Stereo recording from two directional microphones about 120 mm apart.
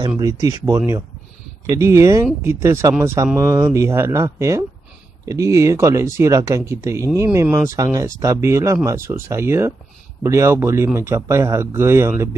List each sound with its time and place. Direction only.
0.2 s speech: 30° right (ahead or behind)